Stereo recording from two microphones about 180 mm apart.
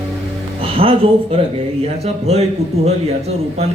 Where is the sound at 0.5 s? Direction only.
30° right (ahead or behind).